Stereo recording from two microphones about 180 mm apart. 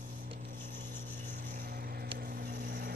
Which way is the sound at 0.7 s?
45° right (ahead or behind).